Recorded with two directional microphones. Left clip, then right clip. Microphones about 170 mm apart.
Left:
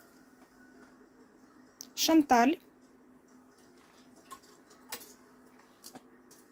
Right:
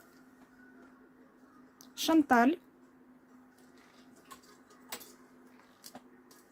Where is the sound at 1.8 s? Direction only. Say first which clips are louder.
Left 2 dB; 20° right (ahead or behind).